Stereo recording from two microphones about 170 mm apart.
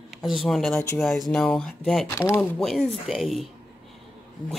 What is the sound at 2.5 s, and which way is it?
Speech, centre (ahead or behind).